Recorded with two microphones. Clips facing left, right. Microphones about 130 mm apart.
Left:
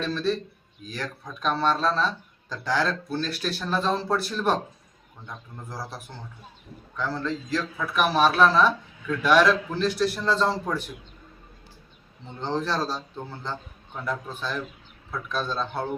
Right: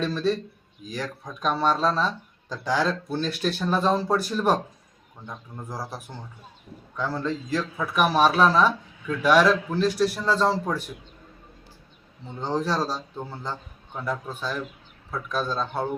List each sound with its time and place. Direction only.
0.9 s speech: 15° right (ahead or behind)
12.4 s speech: 10° right (ahead or behind)